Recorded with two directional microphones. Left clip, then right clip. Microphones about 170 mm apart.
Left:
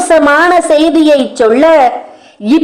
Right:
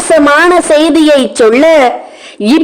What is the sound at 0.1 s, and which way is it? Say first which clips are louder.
A woman's voice: right 2 dB; 45° right (ahead or behind).